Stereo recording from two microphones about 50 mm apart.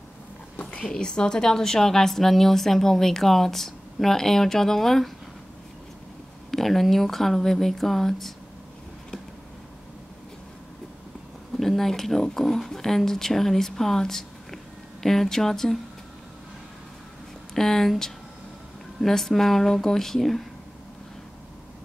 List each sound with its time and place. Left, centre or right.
0.6 s a sound: left
0.8 s a woman's voice: centre
6.5 s speech: centre
11.5 s a woman's voice: centre
17.6 s a woman's voice: centre